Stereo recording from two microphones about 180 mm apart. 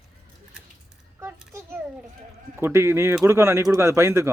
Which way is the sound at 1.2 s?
10° right (ahead or behind).